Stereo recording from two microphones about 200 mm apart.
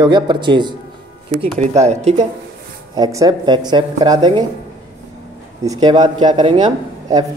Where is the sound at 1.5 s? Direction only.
35° right (ahead or behind).